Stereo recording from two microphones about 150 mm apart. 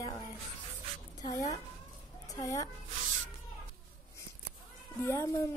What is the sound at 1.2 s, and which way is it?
A woman's voice, 25° left (ahead or behind).